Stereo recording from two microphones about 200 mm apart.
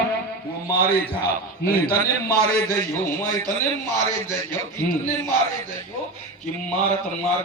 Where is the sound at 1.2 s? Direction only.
50° left (ahead or behind).